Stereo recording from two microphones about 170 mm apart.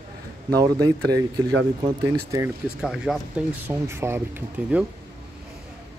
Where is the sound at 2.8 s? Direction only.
Centre (ahead or behind).